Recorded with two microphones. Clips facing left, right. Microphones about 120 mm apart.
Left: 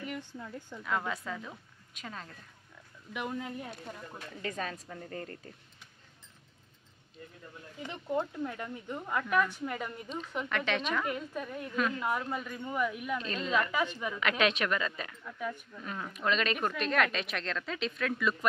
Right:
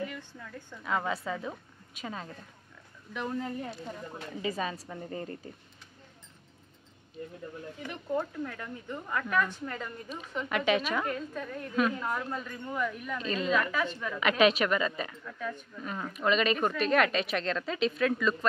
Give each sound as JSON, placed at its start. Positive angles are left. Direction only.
{"t": 0.1, "sound": "a sound", "side_deg": 25}
{"t": 0.8, "sound": "a woman's voice", "side_deg": -5}
{"t": 3.1, "sound": "a woman's voice", "side_deg": 10}
{"t": 7.8, "sound": "speech", "side_deg": 20}
{"t": 10.0, "sound": "a woman's voice", "side_deg": -5}
{"t": 11.1, "sound": "speech", "side_deg": 10}
{"t": 13.2, "sound": "a woman's voice", "side_deg": 0}
{"t": 13.7, "sound": "speech", "side_deg": 15}
{"t": 14.2, "sound": "a woman's voice", "side_deg": -5}
{"t": 15.2, "sound": "speech", "side_deg": 10}
{"t": 15.8, "sound": "a woman's voice", "side_deg": 0}